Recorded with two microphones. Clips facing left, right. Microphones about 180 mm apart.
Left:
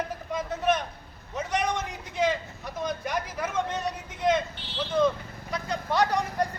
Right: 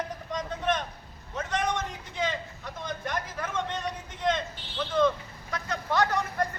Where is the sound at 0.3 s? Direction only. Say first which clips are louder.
Left 3 dB; 5° left (ahead or behind).